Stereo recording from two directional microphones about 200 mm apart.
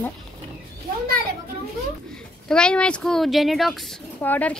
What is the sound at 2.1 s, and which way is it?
Speech, 5° left (ahead or behind).